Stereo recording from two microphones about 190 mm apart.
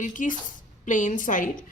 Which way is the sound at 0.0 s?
45° left (ahead or behind).